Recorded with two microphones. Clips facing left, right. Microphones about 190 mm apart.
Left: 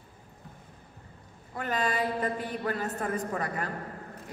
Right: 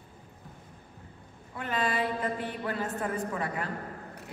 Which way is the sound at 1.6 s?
40° left (ahead or behind).